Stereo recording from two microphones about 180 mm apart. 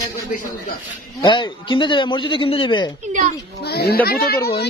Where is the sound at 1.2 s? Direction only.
25° left (ahead or behind).